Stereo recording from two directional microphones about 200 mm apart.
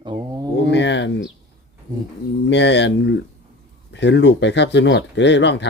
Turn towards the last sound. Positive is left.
turn(degrees=60)  # may be behind; listen again after turning